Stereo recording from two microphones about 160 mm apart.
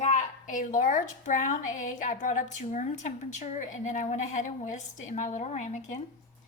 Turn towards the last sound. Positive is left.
turn(degrees=45)  # may be behind; listen again after turning